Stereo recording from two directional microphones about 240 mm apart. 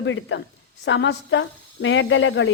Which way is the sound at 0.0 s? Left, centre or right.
Left.